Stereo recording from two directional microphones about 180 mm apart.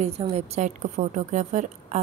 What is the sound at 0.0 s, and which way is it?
A woman's voice, 35° right (ahead or behind).